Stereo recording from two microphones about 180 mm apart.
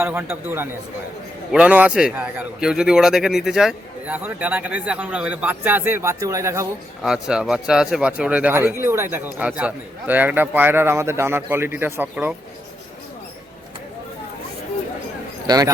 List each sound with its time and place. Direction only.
0.0 s a man's voice: 10° right (ahead or behind)
7.0 s a man's voice: 5° right (ahead or behind)
15.4 s speech: 20° right (ahead or behind)